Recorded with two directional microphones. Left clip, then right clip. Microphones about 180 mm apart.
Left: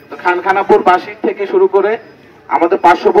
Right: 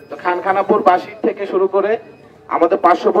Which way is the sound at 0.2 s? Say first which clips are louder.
Left 4 dB; 35° right (ahead or behind).